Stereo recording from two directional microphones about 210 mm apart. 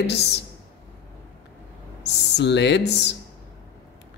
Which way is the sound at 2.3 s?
55° left (ahead or behind).